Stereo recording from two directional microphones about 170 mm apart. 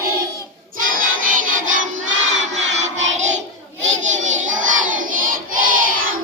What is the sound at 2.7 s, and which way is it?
Music, 40° right (ahead or behind).